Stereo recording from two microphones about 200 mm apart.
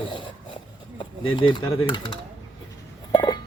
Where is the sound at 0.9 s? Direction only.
25° left (ahead or behind).